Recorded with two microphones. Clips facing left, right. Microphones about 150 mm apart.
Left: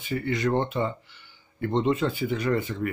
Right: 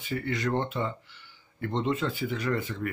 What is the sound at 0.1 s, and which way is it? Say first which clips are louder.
Speech: left 4 dB; 15° left (ahead or behind).